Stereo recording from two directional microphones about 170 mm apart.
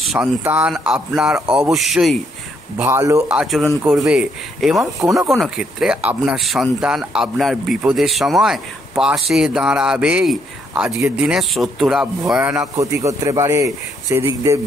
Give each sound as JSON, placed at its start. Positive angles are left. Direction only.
{"t": 0.0, "sound": "speech", "side_deg": 0}
{"t": 2.8, "sound": "speech", "side_deg": -15}
{"t": 3.3, "sound": "speech", "side_deg": 0}
{"t": 5.0, "sound": "speech", "side_deg": -15}
{"t": 5.3, "sound": "speech", "side_deg": 0}